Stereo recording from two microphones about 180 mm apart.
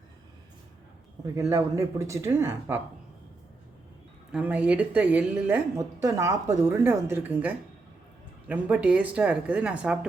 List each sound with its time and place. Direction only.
1.2 s a woman's voice: 15° right (ahead or behind)
4.3 s a woman's voice: 5° right (ahead or behind)